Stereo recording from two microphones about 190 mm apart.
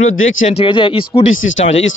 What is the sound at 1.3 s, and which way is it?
Speech, 90° left.